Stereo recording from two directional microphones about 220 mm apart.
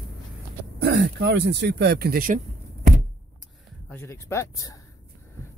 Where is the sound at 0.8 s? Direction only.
50° right (ahead or behind).